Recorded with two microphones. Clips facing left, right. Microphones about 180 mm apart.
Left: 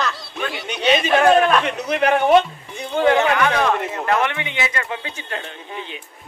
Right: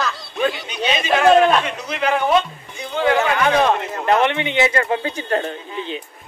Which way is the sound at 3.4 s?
25° right (ahead or behind).